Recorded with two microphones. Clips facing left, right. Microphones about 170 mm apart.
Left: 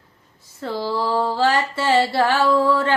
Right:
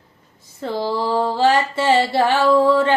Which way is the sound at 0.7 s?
20° right (ahead or behind).